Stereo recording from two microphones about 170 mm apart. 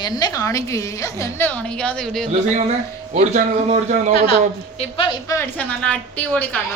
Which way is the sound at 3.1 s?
40° right (ahead or behind).